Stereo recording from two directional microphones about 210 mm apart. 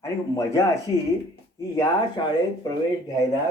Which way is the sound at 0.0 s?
15° left (ahead or behind).